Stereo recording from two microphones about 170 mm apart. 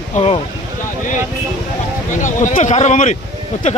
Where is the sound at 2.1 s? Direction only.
50° left (ahead or behind).